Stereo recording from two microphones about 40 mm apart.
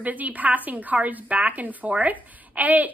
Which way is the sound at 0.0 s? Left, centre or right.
Right.